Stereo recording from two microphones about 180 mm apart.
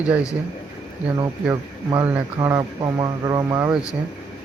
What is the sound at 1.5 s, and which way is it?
Speech, 15° right (ahead or behind).